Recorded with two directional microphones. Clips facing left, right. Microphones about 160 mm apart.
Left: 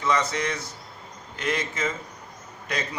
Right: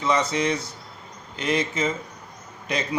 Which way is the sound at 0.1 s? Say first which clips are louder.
Right 3 dB; 15° right (ahead or behind).